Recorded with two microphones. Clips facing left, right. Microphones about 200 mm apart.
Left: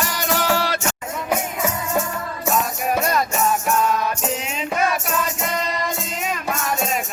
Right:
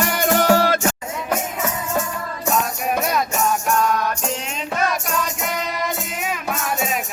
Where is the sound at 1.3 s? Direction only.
10° left (ahead or behind).